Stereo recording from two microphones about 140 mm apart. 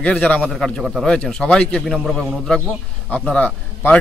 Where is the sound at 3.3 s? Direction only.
10° left (ahead or behind).